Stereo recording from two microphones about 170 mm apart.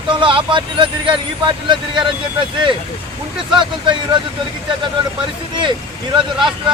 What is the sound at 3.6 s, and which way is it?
Speech, 25° right (ahead or behind).